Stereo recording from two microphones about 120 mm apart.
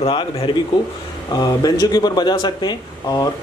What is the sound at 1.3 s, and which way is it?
A man's voice, 35° left (ahead or behind).